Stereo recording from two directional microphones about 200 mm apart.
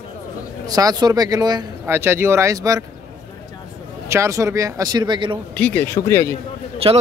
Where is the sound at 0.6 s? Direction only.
20° right (ahead or behind).